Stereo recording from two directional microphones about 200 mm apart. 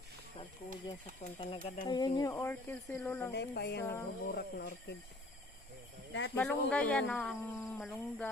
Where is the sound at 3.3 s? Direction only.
55° left (ahead or behind).